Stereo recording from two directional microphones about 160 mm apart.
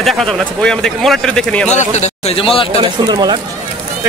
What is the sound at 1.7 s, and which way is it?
Speech, 45° left (ahead or behind).